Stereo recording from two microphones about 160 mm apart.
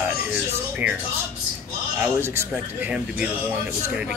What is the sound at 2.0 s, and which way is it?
Speech, 15° right (ahead or behind).